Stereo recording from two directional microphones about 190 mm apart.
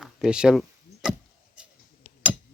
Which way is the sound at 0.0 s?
5° right (ahead or behind).